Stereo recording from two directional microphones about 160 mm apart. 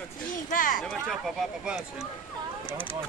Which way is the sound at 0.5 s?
60° left (ahead or behind).